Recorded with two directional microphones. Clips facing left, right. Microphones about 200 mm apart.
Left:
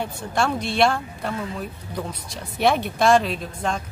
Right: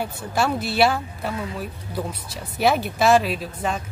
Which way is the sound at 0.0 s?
5° right (ahead or behind).